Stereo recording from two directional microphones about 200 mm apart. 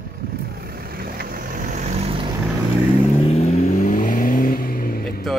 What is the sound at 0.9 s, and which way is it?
Vehicle, 50° right (ahead or behind).